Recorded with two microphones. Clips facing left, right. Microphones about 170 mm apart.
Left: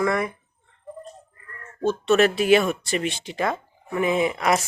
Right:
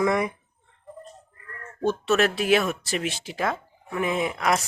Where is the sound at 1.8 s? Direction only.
5° right (ahead or behind).